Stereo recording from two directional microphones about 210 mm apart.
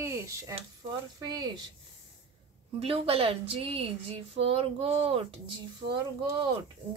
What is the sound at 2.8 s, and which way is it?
Speech, 25° right (ahead or behind).